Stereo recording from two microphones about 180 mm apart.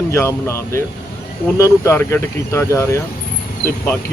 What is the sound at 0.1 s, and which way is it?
Speech, 15° left (ahead or behind).